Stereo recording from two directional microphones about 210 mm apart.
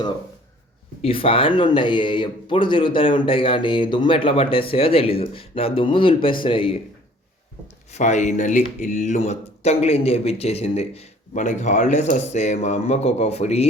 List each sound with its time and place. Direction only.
1.0 s speech: 25° left (ahead or behind)
7.9 s speech: 35° left (ahead or behind)